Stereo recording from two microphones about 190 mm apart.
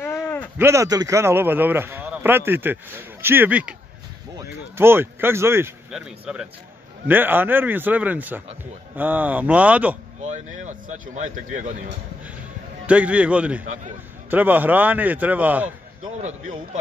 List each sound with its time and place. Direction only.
0.0 s a sound: 10° left (ahead or behind)
0.6 s a man's voice: 15° right (ahead or behind)
10.2 s speech: 40° right (ahead or behind)
12.8 s a man's voice: 5° right (ahead or behind)